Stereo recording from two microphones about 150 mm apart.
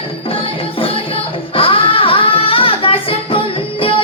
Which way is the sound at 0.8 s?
40° left (ahead or behind).